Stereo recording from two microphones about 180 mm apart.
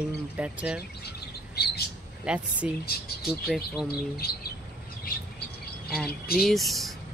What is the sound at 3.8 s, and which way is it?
Speech, 60° left (ahead or behind).